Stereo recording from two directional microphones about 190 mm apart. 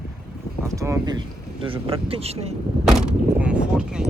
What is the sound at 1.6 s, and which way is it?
Speech, 30° right (ahead or behind).